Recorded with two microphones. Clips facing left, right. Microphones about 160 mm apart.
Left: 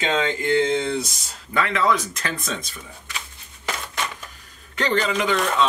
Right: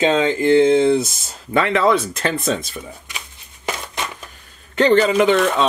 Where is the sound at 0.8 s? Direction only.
5° right (ahead or behind).